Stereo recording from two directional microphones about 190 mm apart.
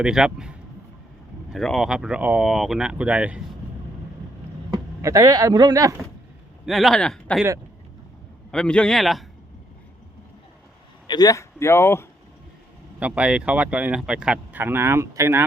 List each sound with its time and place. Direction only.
0.0 s speech: 5° right (ahead or behind)
1.5 s speech: centre (ahead or behind)
4.7 s speech: 20° right (ahead or behind)
6.7 s speech: centre (ahead or behind)
8.5 s speech: 5° left (ahead or behind)
11.0 s speech: 20° left (ahead or behind)
13.0 s speech: 5° right (ahead or behind)